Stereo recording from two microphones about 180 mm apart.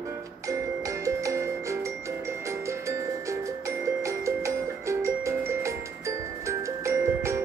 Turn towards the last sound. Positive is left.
turn(degrees=-15)  # may be behind; listen again after turning